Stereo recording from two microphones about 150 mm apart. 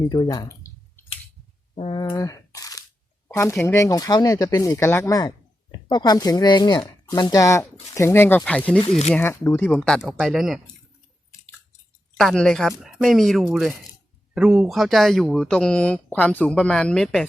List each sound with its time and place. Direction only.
0.0 s speech: 25° left (ahead or behind)
1.7 s a sound: 35° left (ahead or behind); by 3.5 s 15° left (ahead or behind)
3.6 s speech: 20° left (ahead or behind)
8.8 s speech: 45° left (ahead or behind)
9.1 s speech: 15° left (ahead or behind); by 10.6 s centre (ahead or behind)
12.1 s speech: 5° left (ahead or behind)